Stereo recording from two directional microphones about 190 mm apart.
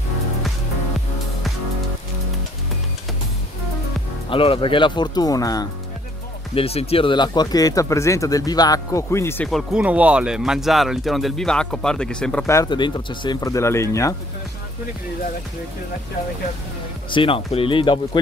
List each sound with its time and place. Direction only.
4.3 s speech: 30° left (ahead or behind)
6.5 s speech: 30° left (ahead or behind); by 9.5 s 15° left (ahead or behind)
9.5 s speech: 5° right (ahead or behind)
12.4 s speech: 20° left (ahead or behind)
17.1 s speech: 30° left (ahead or behind)